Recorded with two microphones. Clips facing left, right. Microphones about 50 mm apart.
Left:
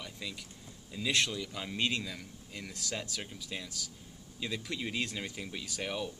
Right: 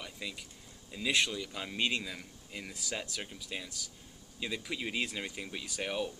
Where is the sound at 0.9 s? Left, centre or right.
Centre.